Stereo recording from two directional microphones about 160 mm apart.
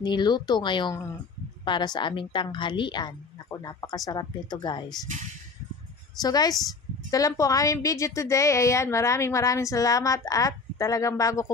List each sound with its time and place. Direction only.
0.0 s a woman's voice: 25° left (ahead or behind)
6.2 s a woman's voice: 25° left (ahead or behind)